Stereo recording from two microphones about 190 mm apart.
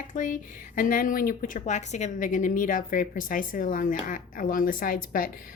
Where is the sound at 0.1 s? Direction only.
45° left (ahead or behind).